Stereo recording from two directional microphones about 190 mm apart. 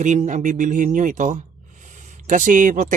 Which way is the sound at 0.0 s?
40° right (ahead or behind).